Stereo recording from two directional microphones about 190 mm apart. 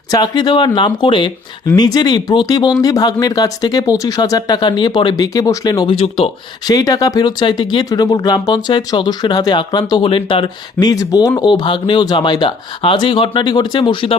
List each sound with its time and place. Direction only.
0.1 s speech: 20° left (ahead or behind)